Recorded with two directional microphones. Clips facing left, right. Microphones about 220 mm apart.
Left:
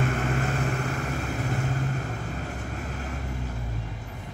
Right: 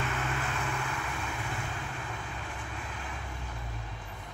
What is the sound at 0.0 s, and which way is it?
Vehicle, 45° left (ahead or behind).